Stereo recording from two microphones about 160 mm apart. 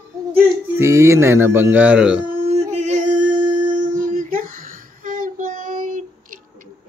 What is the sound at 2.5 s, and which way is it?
Female singing, 45° right (ahead or behind).